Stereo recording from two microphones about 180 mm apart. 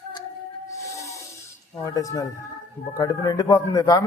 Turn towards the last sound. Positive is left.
turn(degrees=20)  # may be behind; listen again after turning